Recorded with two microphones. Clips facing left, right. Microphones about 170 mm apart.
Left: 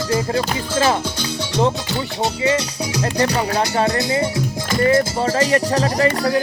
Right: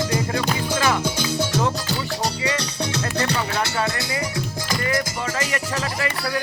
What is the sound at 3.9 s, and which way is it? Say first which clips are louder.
Speech: left 7 dB; 20° left (ahead or behind).